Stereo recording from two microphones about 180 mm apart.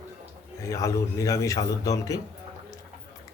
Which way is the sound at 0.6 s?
15° left (ahead or behind).